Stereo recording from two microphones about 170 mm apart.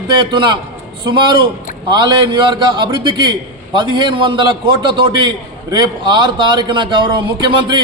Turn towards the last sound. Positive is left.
turn(degrees=-30)  # may be behind; listen again after turning